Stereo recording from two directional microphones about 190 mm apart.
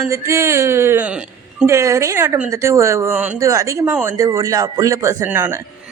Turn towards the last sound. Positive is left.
turn(degrees=-10)  # may be behind; listen again after turning